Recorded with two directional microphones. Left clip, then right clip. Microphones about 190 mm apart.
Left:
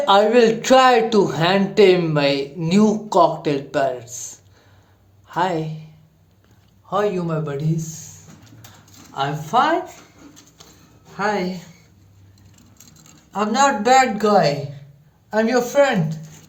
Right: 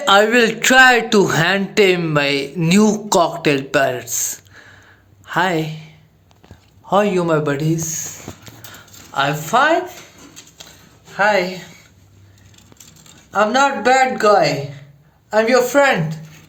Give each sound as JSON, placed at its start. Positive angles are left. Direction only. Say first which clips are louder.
{"t": 0.0, "sound": "a woman's voice", "louder": "right 1 dB", "side_deg": -10}
{"t": 6.8, "sound": "a man's voice", "louder": "right 6 dB", "side_deg": -40}
{"t": 9.1, "sound": "speech", "louder": "right 3 dB", "side_deg": -20}
{"t": 11.2, "sound": "speech", "louder": "right 7 dB", "side_deg": -20}
{"t": 13.3, "sound": "a man's voice", "louder": "right 3 dB", "side_deg": -35}